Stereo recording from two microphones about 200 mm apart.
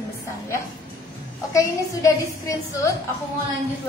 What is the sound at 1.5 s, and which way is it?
A woman's voice, 15° left (ahead or behind).